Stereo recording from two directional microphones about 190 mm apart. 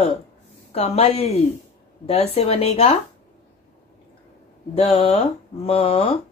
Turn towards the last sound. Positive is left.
turn(degrees=30)  # may be behind; listen again after turning